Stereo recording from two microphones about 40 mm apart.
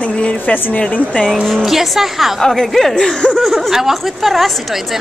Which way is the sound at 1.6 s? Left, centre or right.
Centre.